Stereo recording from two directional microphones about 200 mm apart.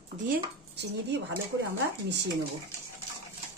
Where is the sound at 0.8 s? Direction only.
60° right (ahead or behind).